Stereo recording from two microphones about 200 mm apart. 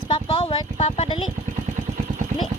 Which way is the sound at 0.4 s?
30° left (ahead or behind).